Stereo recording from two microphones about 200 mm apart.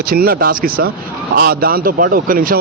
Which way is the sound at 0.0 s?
45° right (ahead or behind).